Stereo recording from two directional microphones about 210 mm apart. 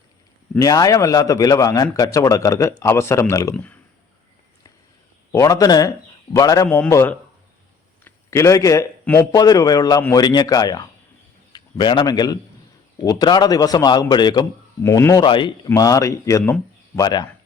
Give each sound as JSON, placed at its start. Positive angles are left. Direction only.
{"t": 0.6, "sound": "a man's voice", "side_deg": 15}
{"t": 5.3, "sound": "a man's voice", "side_deg": 15}